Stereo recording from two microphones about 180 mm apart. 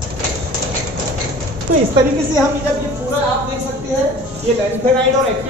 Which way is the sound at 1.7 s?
50° right (ahead or behind).